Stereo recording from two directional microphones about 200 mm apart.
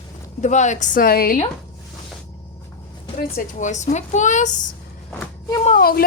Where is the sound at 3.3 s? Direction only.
40° left (ahead or behind).